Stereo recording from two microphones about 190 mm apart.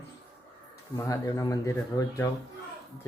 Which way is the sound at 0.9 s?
15° left (ahead or behind).